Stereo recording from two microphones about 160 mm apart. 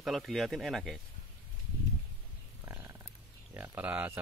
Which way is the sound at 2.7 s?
15° right (ahead or behind).